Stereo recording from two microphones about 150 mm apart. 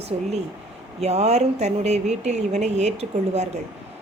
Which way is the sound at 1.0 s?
45° right (ahead or behind).